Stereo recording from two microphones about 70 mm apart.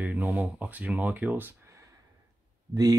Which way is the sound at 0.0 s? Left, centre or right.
Right.